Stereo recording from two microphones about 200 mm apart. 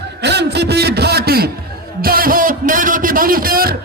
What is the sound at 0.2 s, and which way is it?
A man's voice, 55° right (ahead or behind).